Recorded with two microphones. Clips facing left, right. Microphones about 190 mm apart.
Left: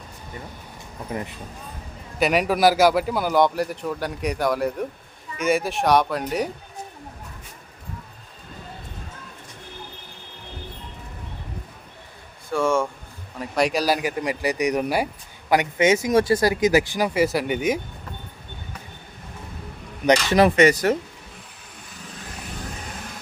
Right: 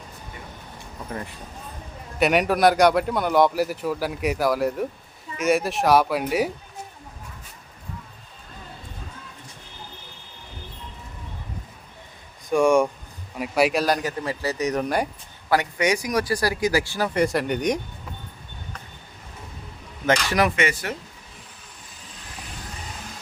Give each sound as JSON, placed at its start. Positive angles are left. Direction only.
{"t": 1.1, "sound": "speech", "side_deg": 20}
{"t": 2.1, "sound": "a man's voice", "side_deg": 0}
{"t": 12.5, "sound": "speech", "side_deg": -15}
{"t": 15.4, "sound": "speech", "side_deg": 20}
{"t": 17.2, "sound": "a man's voice", "side_deg": 5}
{"t": 20.1, "sound": "speech", "side_deg": 30}